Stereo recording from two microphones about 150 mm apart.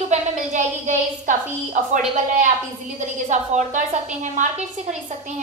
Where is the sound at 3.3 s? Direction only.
55° right (ahead or behind).